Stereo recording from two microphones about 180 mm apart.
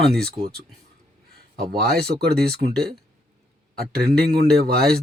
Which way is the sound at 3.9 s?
60° right (ahead or behind).